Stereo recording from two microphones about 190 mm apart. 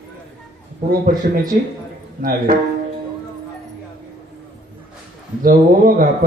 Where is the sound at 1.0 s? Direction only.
45° right (ahead or behind).